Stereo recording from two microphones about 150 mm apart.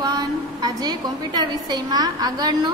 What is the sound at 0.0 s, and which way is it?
A woman's voice, 25° right (ahead or behind).